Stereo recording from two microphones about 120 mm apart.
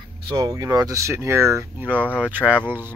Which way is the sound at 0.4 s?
30° right (ahead or behind).